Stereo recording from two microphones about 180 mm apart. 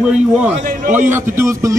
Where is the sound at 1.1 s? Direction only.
15° right (ahead or behind).